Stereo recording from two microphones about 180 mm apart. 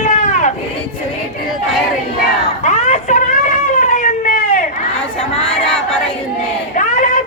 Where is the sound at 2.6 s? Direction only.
40° left (ahead or behind).